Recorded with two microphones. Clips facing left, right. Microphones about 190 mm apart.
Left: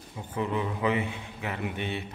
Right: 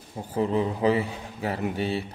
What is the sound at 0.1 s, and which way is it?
A man's voice, 35° right (ahead or behind).